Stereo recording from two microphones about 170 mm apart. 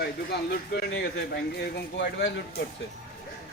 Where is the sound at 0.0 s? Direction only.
70° left (ahead or behind).